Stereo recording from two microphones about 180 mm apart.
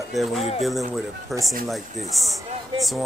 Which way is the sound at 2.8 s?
Centre (ahead or behind).